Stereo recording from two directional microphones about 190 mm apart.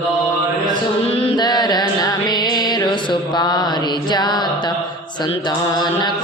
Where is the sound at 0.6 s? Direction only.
30° left (ahead or behind).